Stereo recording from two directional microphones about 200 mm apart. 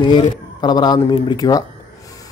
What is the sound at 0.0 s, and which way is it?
Speech, 20° left (ahead or behind).